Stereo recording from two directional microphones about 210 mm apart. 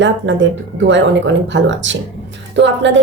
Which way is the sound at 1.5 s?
60° right (ahead or behind).